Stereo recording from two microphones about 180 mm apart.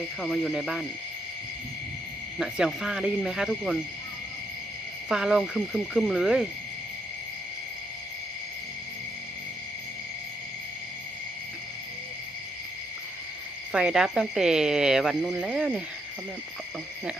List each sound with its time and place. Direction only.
0.2 s speech: centre (ahead or behind)
2.4 s speech: centre (ahead or behind)
5.0 s speech: 5° right (ahead or behind)
13.7 s speech: 5° right (ahead or behind)